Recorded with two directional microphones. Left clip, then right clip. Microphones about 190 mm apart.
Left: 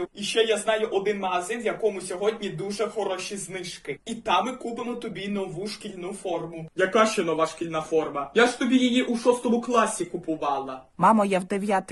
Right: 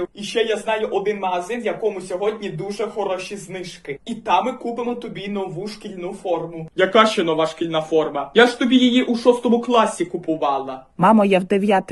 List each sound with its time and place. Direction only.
0.3 s speech: 20° left (ahead or behind)
4.3 s speech: 20° left (ahead or behind)
6.7 s a man's voice: 5° left (ahead or behind)
11.0 s speech: 10° right (ahead or behind)